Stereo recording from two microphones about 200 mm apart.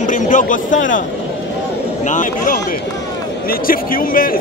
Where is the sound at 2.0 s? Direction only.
40° left (ahead or behind).